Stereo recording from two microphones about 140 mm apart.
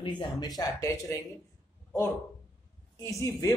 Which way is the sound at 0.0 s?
35° left (ahead or behind).